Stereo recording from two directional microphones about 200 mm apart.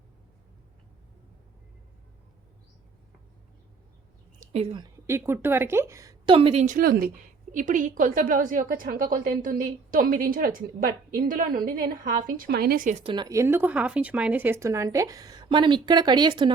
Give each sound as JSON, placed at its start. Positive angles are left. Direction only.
{"t": 4.4, "sound": "speech", "side_deg": -30}
{"t": 5.0, "sound": "a woman's voice", "side_deg": -10}